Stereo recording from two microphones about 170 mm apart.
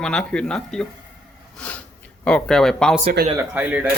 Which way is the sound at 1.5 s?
10° left (ahead or behind).